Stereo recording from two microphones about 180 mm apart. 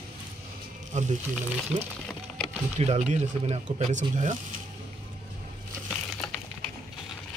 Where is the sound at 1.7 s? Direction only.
25° right (ahead or behind).